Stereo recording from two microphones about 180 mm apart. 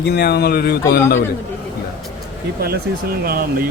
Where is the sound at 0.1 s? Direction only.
65° left (ahead or behind).